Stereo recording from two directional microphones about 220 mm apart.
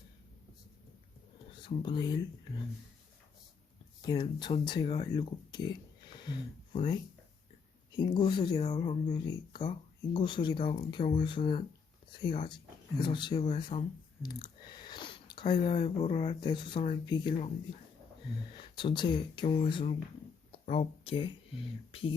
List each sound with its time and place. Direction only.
1.6 s speech: 20° left (ahead or behind)
4.0 s speech: 20° left (ahead or behind)
7.9 s speech: 20° left (ahead or behind)
13.5 s chewing: 20° left (ahead or behind)
15.5 s speech: 25° left (ahead or behind)
18.5 s speech: 20° left (ahead or behind)